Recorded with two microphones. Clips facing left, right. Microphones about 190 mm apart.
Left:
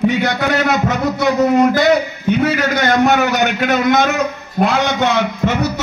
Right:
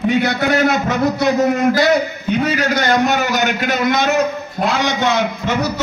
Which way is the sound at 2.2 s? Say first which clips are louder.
Left 3 dB; 55° left (ahead or behind).